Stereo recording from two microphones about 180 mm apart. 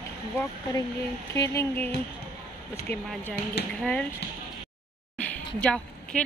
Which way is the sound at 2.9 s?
10° left (ahead or behind).